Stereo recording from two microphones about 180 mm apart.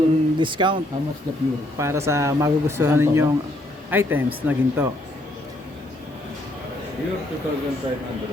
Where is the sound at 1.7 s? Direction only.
15° right (ahead or behind).